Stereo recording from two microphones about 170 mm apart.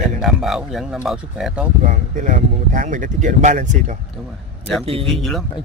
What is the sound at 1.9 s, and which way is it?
Speech, 50° right (ahead or behind).